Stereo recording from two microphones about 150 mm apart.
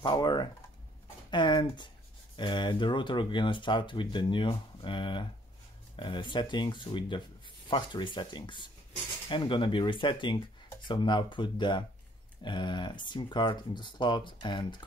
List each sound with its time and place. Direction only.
0.0 s speech: 30° left (ahead or behind)